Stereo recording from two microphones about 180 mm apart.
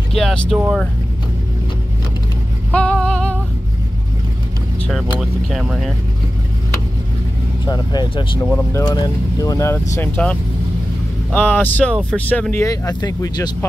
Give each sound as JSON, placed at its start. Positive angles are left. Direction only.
{"t": 0.1, "sound": "speech", "side_deg": 0}
{"t": 2.7, "sound": "music", "side_deg": 5}
{"t": 4.8, "sound": "speech", "side_deg": 0}
{"t": 7.6, "sound": "speech", "side_deg": 25}
{"t": 8.5, "sound": "speech", "side_deg": 10}
{"t": 8.8, "sound": "speech", "side_deg": 20}
{"t": 11.3, "sound": "speech", "side_deg": 10}